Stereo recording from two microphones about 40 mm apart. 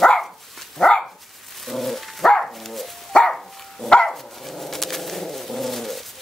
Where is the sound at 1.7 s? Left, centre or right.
Centre.